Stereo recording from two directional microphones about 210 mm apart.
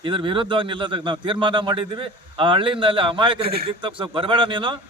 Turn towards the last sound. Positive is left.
turn(degrees=-25)  # may be behind; listen again after turning